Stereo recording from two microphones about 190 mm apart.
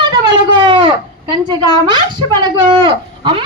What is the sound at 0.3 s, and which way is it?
Speech, 25° right (ahead or behind).